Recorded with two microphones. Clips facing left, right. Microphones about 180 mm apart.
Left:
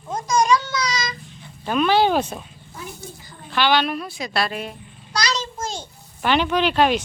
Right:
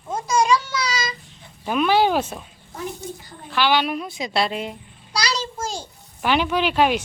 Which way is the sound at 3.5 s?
5° right (ahead or behind).